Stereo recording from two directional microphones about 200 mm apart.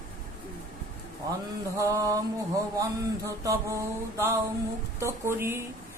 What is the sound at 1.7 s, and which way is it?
Speech, 15° right (ahead or behind).